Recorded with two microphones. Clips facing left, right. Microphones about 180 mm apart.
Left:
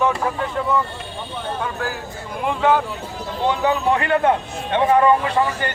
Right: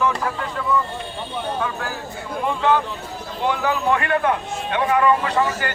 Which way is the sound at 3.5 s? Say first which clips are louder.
Left 2 dB; 20° left (ahead or behind).